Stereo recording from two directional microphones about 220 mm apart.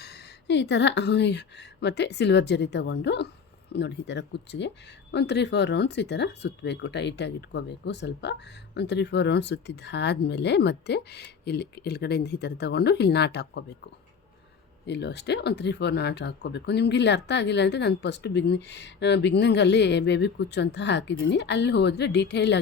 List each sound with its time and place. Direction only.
0.0 s a woman's voice: 50° left (ahead or behind)
14.8 s speech: 50° left (ahead or behind)